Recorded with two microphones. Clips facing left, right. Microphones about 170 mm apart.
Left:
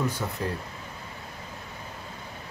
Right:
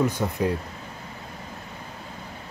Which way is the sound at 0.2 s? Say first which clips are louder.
Right 5 dB; 20° right (ahead or behind).